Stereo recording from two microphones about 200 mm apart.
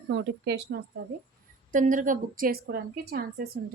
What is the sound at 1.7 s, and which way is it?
A woman's voice, 40° right (ahead or behind).